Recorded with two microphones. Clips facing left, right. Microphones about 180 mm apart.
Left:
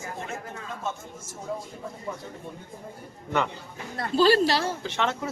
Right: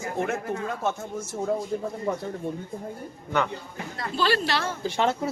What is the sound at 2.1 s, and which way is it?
Speech, 60° right (ahead or behind).